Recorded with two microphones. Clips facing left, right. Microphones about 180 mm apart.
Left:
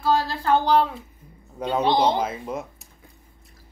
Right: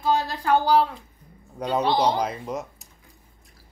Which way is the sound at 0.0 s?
15° right (ahead or behind).